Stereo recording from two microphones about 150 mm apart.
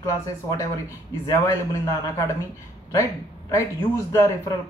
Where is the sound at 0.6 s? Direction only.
20° left (ahead or behind).